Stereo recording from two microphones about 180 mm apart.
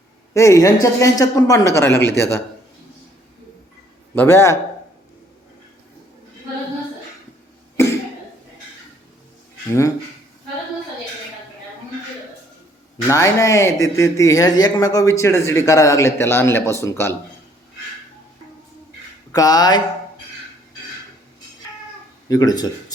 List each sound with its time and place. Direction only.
0.3 s speech: 15° left (ahead or behind)
4.1 s speech: 10° left (ahead or behind)
9.6 s speech: 20° left (ahead or behind)
13.1 s speech: 15° left (ahead or behind)
19.3 s speech: 20° left (ahead or behind)
22.3 s speech: 20° left (ahead or behind)